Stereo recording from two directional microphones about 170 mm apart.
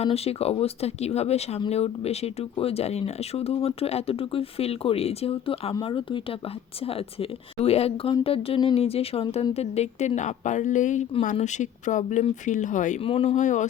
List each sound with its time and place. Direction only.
0.0 s speech: 35° left (ahead or behind)
13.0 s speech: 35° left (ahead or behind)